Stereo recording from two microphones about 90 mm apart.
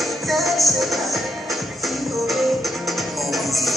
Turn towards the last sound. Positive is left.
turn(degrees=0)  # may be behind; listen again after turning